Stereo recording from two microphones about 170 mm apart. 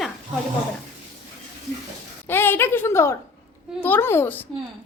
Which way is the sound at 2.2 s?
10° left (ahead or behind).